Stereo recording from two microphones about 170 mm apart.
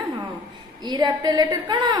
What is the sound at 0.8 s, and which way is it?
A woman's voice, 25° right (ahead or behind).